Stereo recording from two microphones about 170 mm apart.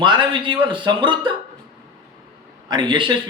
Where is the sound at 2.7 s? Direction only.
30° right (ahead or behind).